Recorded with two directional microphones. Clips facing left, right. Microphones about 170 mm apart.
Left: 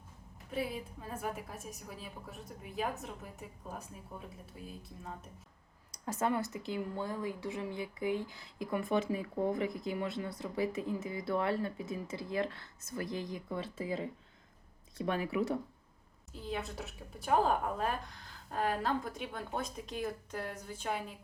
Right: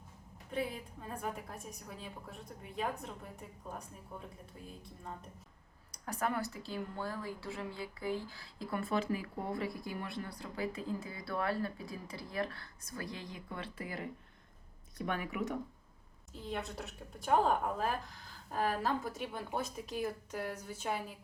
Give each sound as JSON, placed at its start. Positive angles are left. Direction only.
{"t": 0.5, "sound": "a woman's voice", "side_deg": 5}
{"t": 6.1, "sound": "speech", "side_deg": 25}
{"t": 14.9, "sound": "speech", "side_deg": 30}
{"t": 16.3, "sound": "a woman's voice", "side_deg": 0}